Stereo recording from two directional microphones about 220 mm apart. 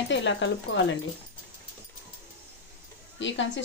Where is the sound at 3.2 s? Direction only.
55° left (ahead or behind).